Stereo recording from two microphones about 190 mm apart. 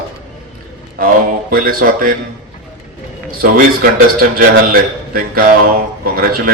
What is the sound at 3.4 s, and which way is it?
A man's voice, 50° right (ahead or behind).